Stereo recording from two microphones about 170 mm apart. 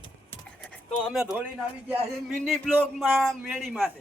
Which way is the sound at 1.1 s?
5° right (ahead or behind).